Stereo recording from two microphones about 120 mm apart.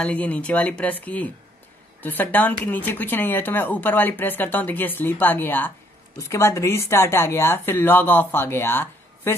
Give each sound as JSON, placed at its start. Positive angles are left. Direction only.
{"t": 0.0, "sound": "speech", "side_deg": 10}